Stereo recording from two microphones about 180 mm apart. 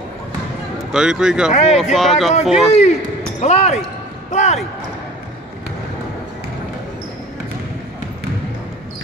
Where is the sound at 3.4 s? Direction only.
40° left (ahead or behind).